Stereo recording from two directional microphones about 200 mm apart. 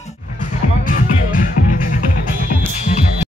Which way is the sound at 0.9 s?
40° left (ahead or behind).